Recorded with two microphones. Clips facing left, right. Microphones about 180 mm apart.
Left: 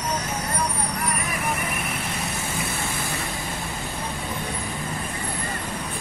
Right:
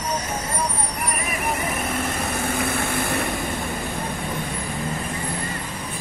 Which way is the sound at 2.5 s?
60° right (ahead or behind).